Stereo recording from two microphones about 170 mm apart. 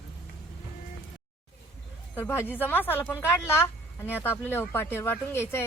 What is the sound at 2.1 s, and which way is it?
Speech, 15° left (ahead or behind).